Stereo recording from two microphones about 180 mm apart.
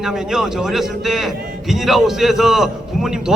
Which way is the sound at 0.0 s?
Centre (ahead or behind).